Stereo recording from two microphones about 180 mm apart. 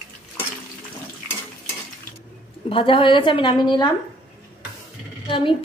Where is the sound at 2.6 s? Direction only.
30° left (ahead or behind).